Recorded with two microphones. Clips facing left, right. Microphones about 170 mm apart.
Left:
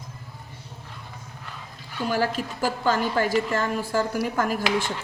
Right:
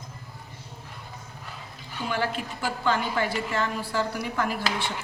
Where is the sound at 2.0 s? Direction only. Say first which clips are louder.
Left 4 dB; 40° left (ahead or behind).